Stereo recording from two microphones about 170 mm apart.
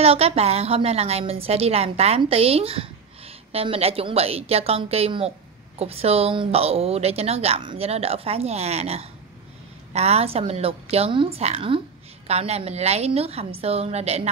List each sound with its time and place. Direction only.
0.0 s a woman's voice: 35° right (ahead or behind)